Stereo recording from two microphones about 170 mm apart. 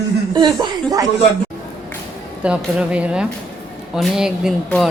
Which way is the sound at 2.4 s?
5° right (ahead or behind).